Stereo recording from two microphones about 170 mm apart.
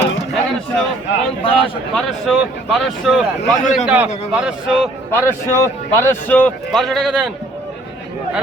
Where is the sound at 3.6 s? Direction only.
45° left (ahead or behind).